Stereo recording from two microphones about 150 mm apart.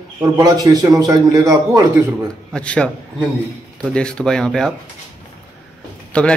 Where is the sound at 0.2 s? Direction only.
25° right (ahead or behind).